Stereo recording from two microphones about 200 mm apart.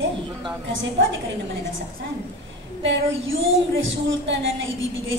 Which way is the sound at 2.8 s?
65° right (ahead or behind).